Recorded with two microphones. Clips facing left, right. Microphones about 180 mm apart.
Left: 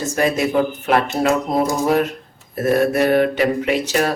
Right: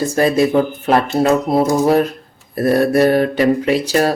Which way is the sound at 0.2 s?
35° right (ahead or behind).